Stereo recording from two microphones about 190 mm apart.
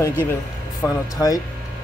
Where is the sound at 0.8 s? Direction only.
20° left (ahead or behind).